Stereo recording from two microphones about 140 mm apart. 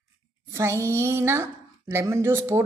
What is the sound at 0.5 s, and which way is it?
A woman's voice, 20° right (ahead or behind).